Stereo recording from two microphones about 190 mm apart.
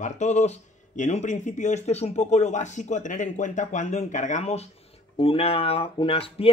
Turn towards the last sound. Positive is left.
turn(degrees=30)  # may be behind; listen again after turning